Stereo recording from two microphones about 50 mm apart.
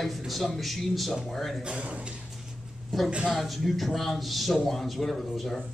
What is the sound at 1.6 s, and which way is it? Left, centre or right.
Speech, right.